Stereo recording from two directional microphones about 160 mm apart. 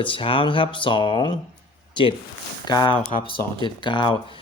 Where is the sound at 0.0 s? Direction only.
35° left (ahead or behind).